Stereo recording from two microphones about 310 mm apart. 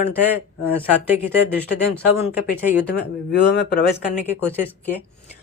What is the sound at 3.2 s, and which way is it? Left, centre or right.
Speech, left.